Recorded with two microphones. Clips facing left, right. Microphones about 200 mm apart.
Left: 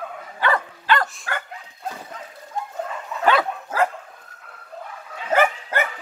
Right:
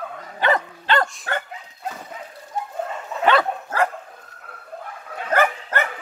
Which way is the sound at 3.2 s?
5° left (ahead or behind).